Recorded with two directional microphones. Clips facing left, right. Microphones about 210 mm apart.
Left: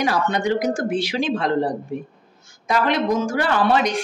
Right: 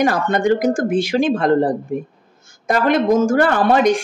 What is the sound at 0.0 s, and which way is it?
A woman's voice, 50° right (ahead or behind).